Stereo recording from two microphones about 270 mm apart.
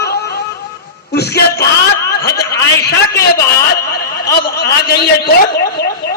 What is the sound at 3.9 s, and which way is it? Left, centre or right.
A man's voice, left.